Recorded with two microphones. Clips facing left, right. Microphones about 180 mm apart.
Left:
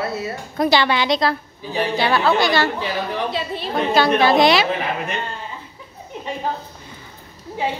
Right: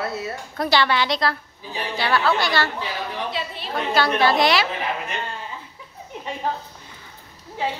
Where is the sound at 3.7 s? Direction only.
20° left (ahead or behind).